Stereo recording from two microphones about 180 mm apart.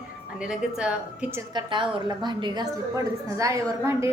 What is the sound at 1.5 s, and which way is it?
A woman's voice, 25° right (ahead or behind).